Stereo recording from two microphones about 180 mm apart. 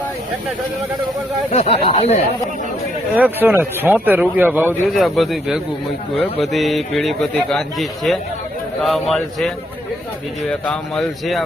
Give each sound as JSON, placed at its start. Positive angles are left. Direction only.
{"t": 1.5, "sound": "speech", "side_deg": 35}
{"t": 3.2, "sound": "speech", "side_deg": -10}
{"t": 4.9, "sound": "a man's voice", "side_deg": 0}
{"t": 10.5, "sound": "a man's voice", "side_deg": 5}